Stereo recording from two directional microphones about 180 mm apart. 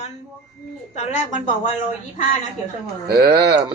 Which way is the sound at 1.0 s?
45° left (ahead or behind).